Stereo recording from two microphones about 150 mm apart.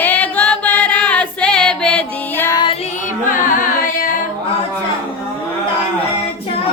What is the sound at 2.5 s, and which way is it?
Music, 30° left (ahead or behind).